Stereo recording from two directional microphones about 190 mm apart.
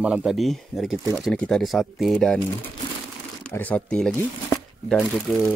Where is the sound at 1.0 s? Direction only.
15° right (ahead or behind).